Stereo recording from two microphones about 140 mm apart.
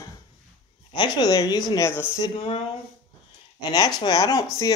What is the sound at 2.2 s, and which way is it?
Speech, 35° left (ahead or behind).